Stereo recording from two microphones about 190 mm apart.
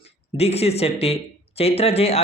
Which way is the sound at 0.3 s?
35° left (ahead or behind).